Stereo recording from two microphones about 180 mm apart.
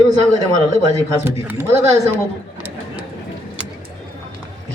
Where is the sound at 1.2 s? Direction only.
10° right (ahead or behind).